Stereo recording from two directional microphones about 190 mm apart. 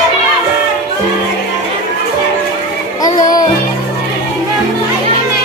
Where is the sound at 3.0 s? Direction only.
20° left (ahead or behind).